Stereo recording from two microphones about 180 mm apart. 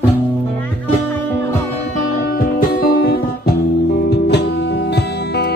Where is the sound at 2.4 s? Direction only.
55° left (ahead or behind).